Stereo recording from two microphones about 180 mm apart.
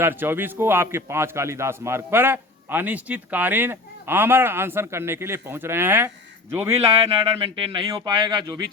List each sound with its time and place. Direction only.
0.0 s a man's voice: 10° right (ahead or behind)
7.1 s speech: 30° right (ahead or behind)